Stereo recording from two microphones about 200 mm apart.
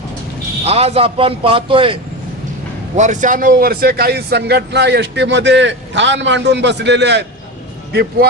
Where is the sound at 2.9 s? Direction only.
40° right (ahead or behind).